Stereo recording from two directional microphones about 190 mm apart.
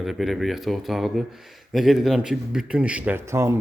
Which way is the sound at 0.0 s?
Centre (ahead or behind).